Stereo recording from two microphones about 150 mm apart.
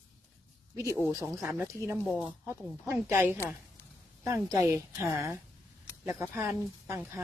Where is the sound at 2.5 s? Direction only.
15° right (ahead or behind).